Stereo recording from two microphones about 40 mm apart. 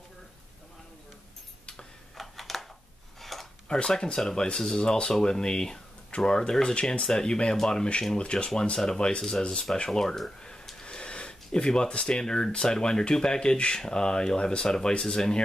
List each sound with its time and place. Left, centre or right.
2.1 s a sound: centre
3.6 s speech: centre
8.2 s speech: left
8.5 s speech: centre
9.8 s speech: centre
10.8 s a sound: left
12.5 s speech: centre